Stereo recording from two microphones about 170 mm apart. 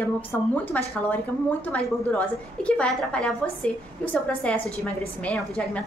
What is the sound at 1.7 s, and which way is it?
A woman's voice, 5° left (ahead or behind).